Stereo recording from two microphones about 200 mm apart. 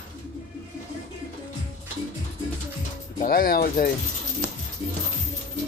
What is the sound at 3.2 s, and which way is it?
Speech, 45° left (ahead or behind).